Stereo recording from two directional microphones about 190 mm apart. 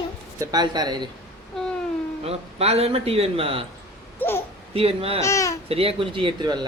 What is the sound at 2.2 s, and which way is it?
A man's voice, 30° right (ahead or behind).